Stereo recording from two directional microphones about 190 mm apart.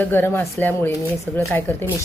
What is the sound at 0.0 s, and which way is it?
A woman's voice, 10° left (ahead or behind).